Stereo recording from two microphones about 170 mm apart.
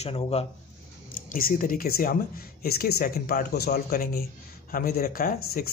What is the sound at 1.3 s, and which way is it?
Speech, 55° left (ahead or behind).